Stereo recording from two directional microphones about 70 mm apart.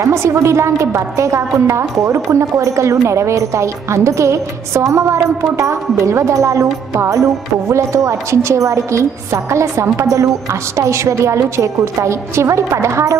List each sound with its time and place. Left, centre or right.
0.0 s a woman's voice: right